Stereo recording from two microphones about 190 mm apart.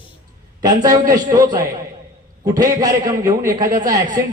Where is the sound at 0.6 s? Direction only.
20° right (ahead or behind).